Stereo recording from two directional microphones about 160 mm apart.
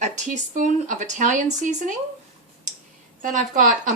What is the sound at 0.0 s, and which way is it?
Speech, 55° right (ahead or behind).